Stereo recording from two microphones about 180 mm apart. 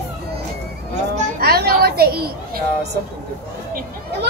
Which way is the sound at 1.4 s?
60° right (ahead or behind).